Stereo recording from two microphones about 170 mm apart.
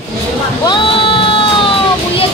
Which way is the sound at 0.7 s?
30° left (ahead or behind).